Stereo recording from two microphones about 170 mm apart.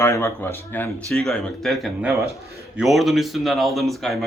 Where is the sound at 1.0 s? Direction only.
Centre (ahead or behind).